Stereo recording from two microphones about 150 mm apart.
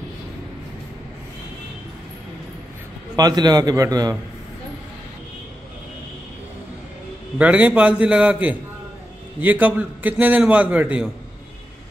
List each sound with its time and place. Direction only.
3.2 s a man's voice: 25° right (ahead or behind)
7.3 s a man's voice: 10° right (ahead or behind)